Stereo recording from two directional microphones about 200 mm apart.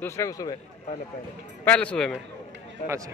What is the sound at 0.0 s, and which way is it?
Speech, 15° left (ahead or behind).